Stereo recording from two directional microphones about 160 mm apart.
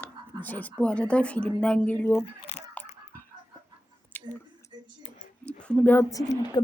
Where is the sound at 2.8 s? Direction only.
10° left (ahead or behind).